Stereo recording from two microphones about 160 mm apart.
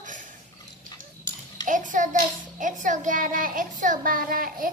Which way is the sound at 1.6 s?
55° right (ahead or behind).